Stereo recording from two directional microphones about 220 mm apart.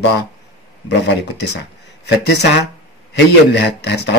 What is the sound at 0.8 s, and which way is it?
A man's voice, 50° left (ahead or behind).